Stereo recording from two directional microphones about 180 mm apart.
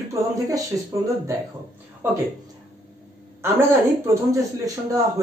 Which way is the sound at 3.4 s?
15° right (ahead or behind).